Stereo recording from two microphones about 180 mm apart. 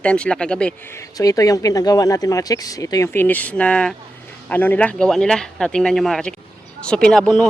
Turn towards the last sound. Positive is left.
turn(degrees=5)  # may be behind; listen again after turning